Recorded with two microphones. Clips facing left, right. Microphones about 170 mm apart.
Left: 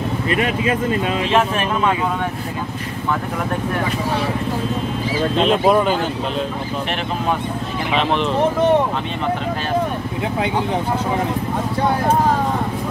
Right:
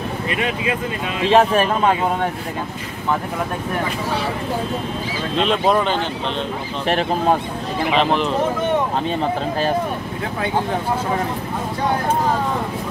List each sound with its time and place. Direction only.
1.3 s speech: 35° right (ahead or behind)
5.4 s speech: 5° left (ahead or behind)
7.9 s speech: centre (ahead or behind)